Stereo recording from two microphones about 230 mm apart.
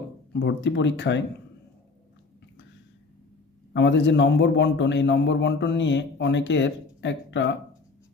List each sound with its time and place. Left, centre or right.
0.3 s a man's voice: left
3.7 s a man's voice: left